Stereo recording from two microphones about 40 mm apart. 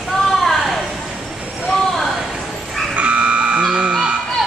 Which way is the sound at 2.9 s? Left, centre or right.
Right.